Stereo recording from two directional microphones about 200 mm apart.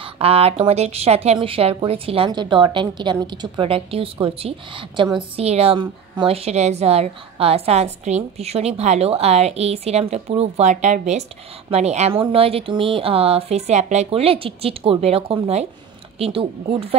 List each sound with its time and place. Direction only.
0.0 s a woman's voice: 30° right (ahead or behind)